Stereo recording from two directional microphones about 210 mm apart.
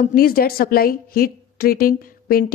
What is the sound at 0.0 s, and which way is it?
A woman's voice, 45° left (ahead or behind).